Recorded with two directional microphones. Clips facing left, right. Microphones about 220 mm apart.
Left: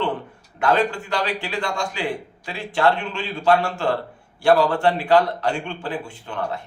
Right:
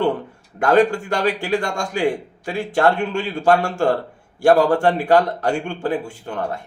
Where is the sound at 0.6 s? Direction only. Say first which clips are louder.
Right 5 dB; 45° right (ahead or behind).